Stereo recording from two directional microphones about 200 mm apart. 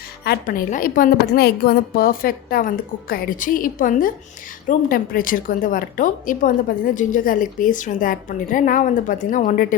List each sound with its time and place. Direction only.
0.3 s a woman's voice: 45° left (ahead or behind)